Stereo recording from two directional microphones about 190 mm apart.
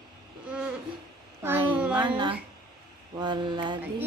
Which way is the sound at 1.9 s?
25° right (ahead or behind).